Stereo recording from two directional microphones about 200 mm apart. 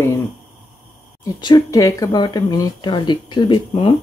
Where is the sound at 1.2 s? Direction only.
20° left (ahead or behind).